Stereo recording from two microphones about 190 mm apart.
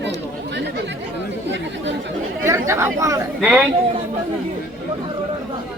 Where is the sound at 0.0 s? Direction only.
65° right (ahead or behind).